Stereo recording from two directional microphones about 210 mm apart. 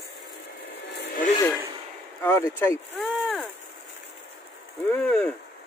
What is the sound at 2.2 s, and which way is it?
Speech, 10° left (ahead or behind).